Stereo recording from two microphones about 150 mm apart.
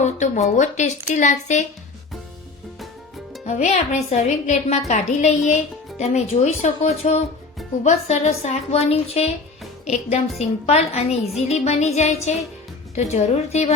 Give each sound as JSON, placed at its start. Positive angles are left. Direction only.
{"t": 0.0, "sound": "a woman's voice", "side_deg": 50}
{"t": 3.4, "sound": "a woman's voice", "side_deg": 50}